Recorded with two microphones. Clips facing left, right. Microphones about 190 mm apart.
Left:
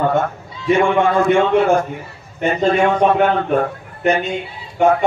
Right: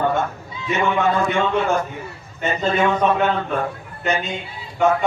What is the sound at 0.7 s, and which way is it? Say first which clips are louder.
A man's voice: left 4 dB; 55° left (ahead or behind).